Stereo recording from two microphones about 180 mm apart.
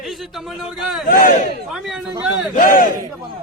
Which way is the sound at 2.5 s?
50° left (ahead or behind).